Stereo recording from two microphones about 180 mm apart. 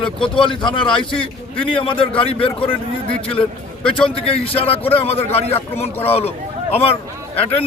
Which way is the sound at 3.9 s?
30° left (ahead or behind).